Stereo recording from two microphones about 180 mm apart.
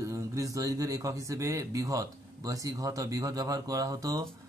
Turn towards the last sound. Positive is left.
turn(degrees=-20)  # may be behind; listen again after turning